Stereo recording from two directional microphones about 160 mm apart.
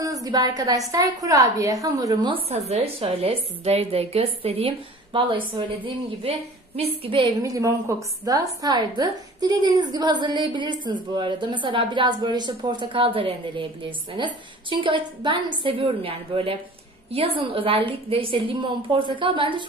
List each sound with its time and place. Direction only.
0.0 s a woman's voice: 20° right (ahead or behind)
2.5 s a woman's voice: 40° right (ahead or behind)
6.8 s a woman's voice: 35° right (ahead or behind)
7.4 s a woman's voice: 20° right (ahead or behind)